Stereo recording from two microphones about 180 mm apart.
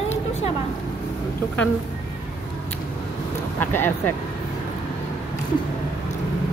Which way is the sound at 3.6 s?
10° left (ahead or behind).